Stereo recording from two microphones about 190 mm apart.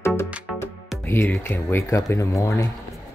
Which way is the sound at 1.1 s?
10° left (ahead or behind).